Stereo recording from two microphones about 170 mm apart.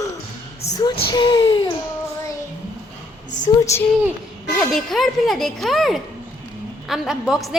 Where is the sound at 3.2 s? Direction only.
45° left (ahead or behind).